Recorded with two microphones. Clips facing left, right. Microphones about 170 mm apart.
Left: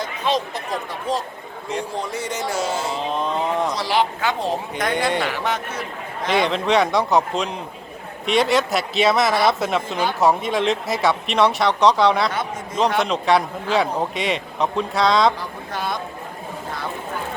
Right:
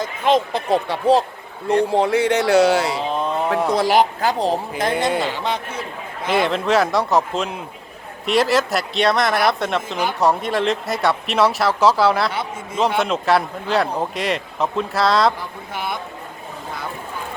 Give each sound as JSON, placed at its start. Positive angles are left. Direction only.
{"t": 0.0, "sound": "speech", "side_deg": -55}
{"t": 0.9, "sound": "speech", "side_deg": -65}
{"t": 3.0, "sound": "speech", "side_deg": 0}
{"t": 3.7, "sound": "speech", "side_deg": -50}
{"t": 4.9, "sound": "speech", "side_deg": 0}
{"t": 5.2, "sound": "speech", "side_deg": -15}
{"t": 6.2, "sound": "speech", "side_deg": -5}